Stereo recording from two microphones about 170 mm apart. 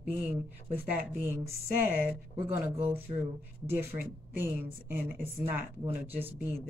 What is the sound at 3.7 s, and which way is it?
Speech, 15° right (ahead or behind).